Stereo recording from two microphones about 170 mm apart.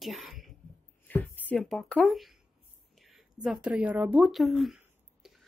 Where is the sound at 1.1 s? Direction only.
10° left (ahead or behind).